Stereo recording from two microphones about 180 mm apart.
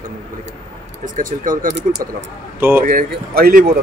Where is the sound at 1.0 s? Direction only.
45° right (ahead or behind).